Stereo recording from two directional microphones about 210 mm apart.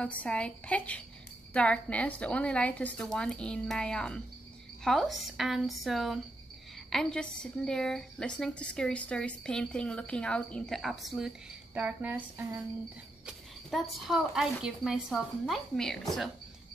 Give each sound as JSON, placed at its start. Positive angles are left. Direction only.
{"t": 0.0, "sound": "a woman's voice", "side_deg": 5}